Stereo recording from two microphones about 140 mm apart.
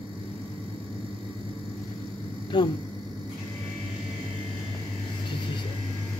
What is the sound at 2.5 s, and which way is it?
Speech, 30° left (ahead or behind).